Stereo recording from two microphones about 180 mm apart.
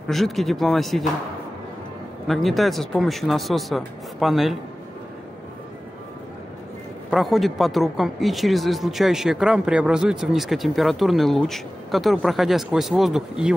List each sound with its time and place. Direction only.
0.1 s speech: centre (ahead or behind)
2.2 s speech: centre (ahead or behind)
7.1 s speech: centre (ahead or behind)